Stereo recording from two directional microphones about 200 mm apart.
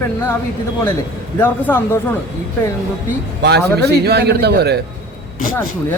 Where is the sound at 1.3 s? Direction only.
10° left (ahead or behind).